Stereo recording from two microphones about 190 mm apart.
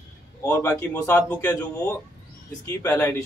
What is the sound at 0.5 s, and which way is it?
Speech, 15° left (ahead or behind).